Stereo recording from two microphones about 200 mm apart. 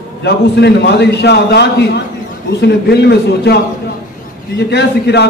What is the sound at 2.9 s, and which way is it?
A man's voice, 55° left (ahead or behind).